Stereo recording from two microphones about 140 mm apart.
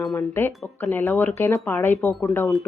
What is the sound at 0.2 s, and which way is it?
Speech, 15° left (ahead or behind).